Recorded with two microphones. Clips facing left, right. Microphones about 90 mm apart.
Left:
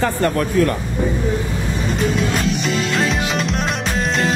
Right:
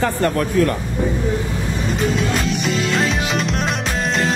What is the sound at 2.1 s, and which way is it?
Music, centre (ahead or behind).